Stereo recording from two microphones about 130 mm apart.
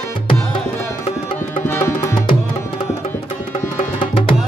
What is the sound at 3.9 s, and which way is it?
Music, 40° left (ahead or behind).